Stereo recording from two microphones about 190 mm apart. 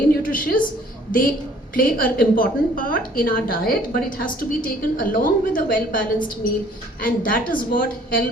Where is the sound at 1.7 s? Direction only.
50° left (ahead or behind).